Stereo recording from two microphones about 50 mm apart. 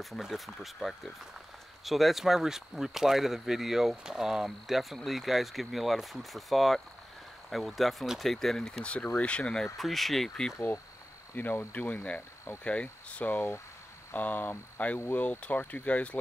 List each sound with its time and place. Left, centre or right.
0.2 s speech: centre
8.8 s speech: left
9.6 s speech: centre
11.3 s speech: left
15.1 s speech: left